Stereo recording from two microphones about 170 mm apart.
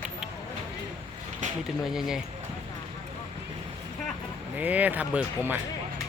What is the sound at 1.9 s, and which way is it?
Speech, 5° right (ahead or behind).